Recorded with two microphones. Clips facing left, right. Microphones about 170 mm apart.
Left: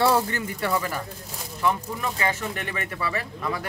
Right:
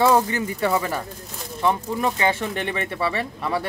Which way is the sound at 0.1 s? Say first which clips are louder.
Right 4 dB; 20° right (ahead or behind).